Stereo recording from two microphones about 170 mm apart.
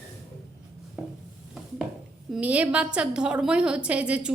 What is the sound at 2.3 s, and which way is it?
A woman's voice, 10° right (ahead or behind).